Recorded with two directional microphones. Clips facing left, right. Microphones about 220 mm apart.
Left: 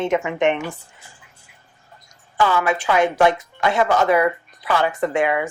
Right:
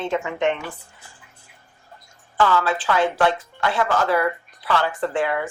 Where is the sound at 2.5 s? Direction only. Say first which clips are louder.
Left 3 dB; 15° left (ahead or behind).